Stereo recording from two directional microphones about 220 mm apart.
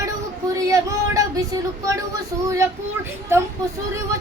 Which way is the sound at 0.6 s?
15° right (ahead or behind).